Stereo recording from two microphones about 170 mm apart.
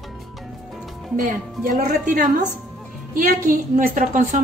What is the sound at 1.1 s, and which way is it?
Speech, 50° right (ahead or behind).